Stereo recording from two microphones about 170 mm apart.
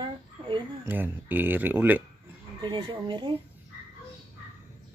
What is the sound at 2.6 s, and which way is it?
Speech, 30° right (ahead or behind).